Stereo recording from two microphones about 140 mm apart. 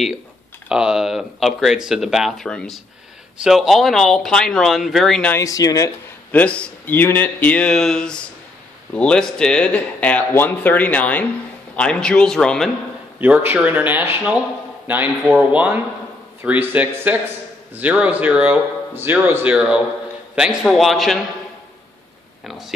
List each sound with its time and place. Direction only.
0.7 s speech: 5° right (ahead or behind)
5.3 s speech: 25° left (ahead or behind)
6.3 s a man's voice: 10° left (ahead or behind)
13.2 s speech: 15° right (ahead or behind)
22.4 s speech: centre (ahead or behind)